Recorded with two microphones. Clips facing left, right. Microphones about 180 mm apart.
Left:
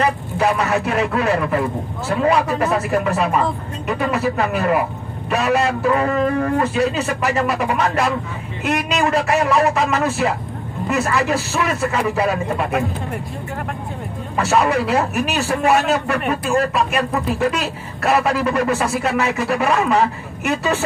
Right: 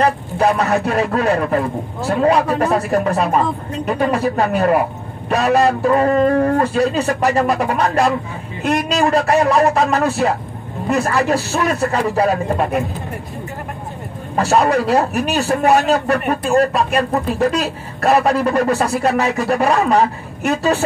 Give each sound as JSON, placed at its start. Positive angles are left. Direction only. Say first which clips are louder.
{"t": 0.0, "sound": "speech", "louder": "right 3 dB", "side_deg": -35}
{"t": 2.9, "sound": "speech", "louder": "right 2 dB", "side_deg": -40}
{"t": 14.3, "sound": "speech", "louder": "right 2 dB", "side_deg": -35}